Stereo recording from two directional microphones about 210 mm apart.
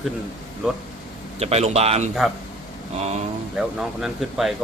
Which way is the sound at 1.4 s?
30° right (ahead or behind).